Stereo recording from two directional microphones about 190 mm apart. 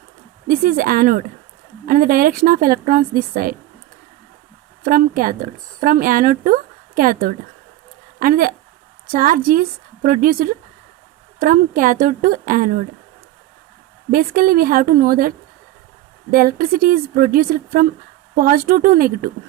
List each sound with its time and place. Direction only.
0.4 s a woman's voice: 50° right (ahead or behind)
4.8 s a woman's voice: 50° right (ahead or behind)
14.1 s a woman's voice: 50° right (ahead or behind)
16.3 s a woman's voice: 50° right (ahead or behind)